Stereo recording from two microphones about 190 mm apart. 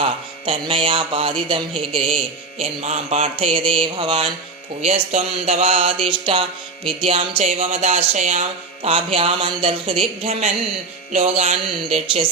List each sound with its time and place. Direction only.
0.0 s speech: 25° right (ahead or behind)
11.1 s speech: 35° right (ahead or behind)